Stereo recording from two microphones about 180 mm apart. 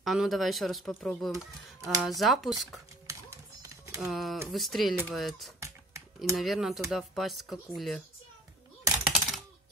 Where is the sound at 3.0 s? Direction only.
15° right (ahead or behind).